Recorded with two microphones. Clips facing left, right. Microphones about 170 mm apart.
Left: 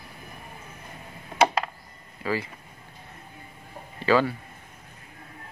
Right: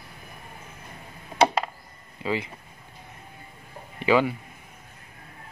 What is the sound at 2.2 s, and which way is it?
Speech, 20° right (ahead or behind).